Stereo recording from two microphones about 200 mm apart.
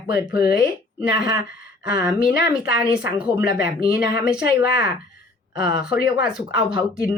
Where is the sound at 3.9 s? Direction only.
50° left (ahead or behind).